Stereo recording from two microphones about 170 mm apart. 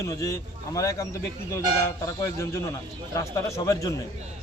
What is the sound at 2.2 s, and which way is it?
A man's voice, 15° left (ahead or behind).